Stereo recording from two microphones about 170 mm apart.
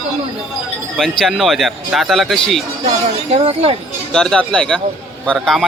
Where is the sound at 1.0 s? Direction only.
Centre (ahead or behind).